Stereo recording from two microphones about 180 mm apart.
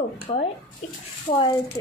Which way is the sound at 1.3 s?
25° left (ahead or behind).